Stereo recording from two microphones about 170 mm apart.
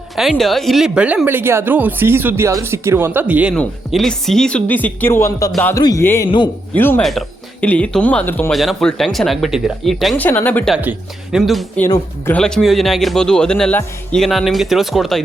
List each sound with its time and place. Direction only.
0.2 s speech: centre (ahead or behind)
3.5 s speech: 5° left (ahead or behind)
5.7 s music: 20° left (ahead or behind)
6.7 s speech: 10° left (ahead or behind)
7.0 s speech: centre (ahead or behind)
10.2 s speech: 10° left (ahead or behind)
10.8 s speech: 5° right (ahead or behind)
11.9 s speech: 10° left (ahead or behind)